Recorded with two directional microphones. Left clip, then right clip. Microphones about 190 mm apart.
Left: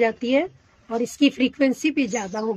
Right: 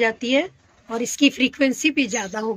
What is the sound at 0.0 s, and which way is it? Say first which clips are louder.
Speech: even; 20° left (ahead or behind).